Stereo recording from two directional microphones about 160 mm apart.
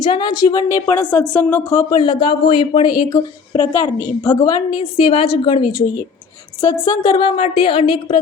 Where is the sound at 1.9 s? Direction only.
30° left (ahead or behind).